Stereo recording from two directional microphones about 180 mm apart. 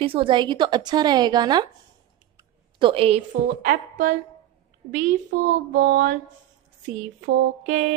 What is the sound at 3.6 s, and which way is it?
Speech, 50° right (ahead or behind).